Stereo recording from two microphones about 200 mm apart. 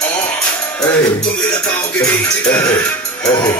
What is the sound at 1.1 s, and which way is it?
Speech, 5° left (ahead or behind).